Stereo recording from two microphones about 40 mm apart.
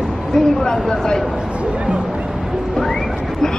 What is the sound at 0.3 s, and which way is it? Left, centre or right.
Speech, centre.